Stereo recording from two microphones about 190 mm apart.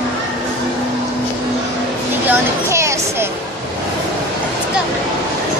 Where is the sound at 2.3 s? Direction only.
15° right (ahead or behind).